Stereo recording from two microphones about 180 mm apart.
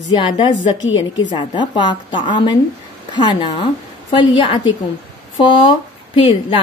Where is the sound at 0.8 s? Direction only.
90° left.